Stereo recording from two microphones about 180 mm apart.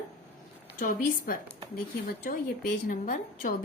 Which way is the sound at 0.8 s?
50° left (ahead or behind).